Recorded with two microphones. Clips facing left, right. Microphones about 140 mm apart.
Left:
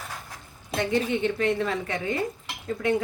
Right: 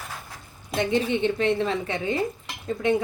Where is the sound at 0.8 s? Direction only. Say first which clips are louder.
Right 2 dB; 20° right (ahead or behind).